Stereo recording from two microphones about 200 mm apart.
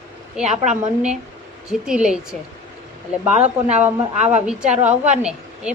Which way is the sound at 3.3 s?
35° right (ahead or behind).